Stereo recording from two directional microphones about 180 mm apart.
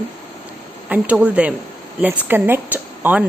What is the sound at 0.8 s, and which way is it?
Speech, 10° right (ahead or behind).